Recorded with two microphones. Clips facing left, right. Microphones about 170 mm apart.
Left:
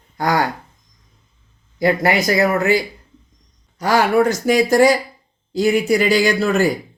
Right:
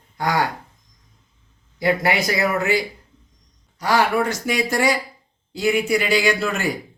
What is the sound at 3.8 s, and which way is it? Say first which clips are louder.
Speech: left 4 dB; 45° left (ahead or behind).